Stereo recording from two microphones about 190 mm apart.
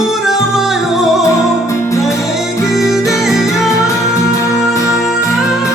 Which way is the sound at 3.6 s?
15° left (ahead or behind).